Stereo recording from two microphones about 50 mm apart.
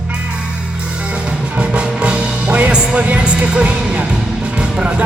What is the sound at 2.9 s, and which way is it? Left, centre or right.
Speech, right.